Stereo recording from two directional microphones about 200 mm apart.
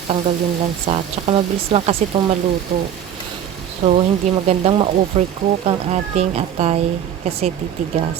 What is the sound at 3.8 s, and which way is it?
Speech, 35° right (ahead or behind).